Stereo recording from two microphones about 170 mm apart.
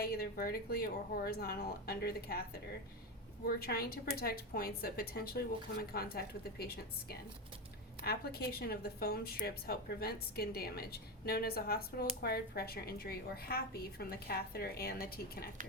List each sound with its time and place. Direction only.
0.0 s a woman's voice: 60° left (ahead or behind)
3.4 s a woman's voice: 60° left (ahead or behind)